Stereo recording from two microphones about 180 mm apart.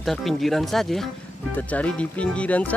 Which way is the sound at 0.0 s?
Centre (ahead or behind).